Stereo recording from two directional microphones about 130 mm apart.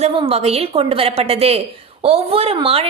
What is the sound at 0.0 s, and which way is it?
A woman's voice, 45° right (ahead or behind).